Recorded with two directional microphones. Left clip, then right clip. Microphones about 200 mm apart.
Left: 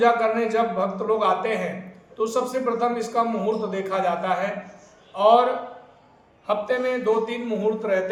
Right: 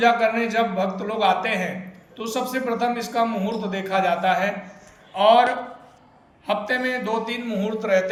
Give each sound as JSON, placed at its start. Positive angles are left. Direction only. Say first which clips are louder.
{"t": 0.0, "sound": "a man's voice", "louder": "right 1 dB", "side_deg": 20}
{"t": 6.5, "sound": "a man's voice", "louder": "even", "side_deg": 20}